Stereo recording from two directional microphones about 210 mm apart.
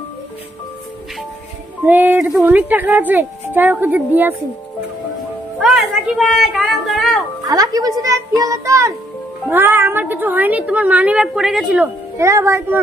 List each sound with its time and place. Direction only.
1.9 s speech: 10° right (ahead or behind)
5.6 s speech: 5° right (ahead or behind)
7.4 s speech: 15° right (ahead or behind)